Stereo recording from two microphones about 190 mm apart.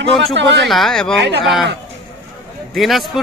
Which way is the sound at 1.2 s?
65° right (ahead or behind).